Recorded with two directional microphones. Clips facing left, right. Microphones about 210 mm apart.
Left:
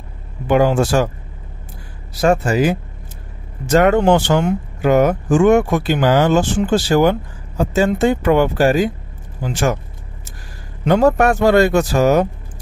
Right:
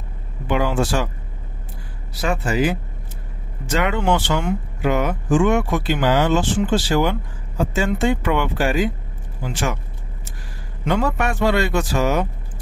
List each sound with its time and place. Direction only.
0.5 s speech: 45° left (ahead or behind)
2.2 s speech: 45° left (ahead or behind)
10.9 s speech: 40° left (ahead or behind)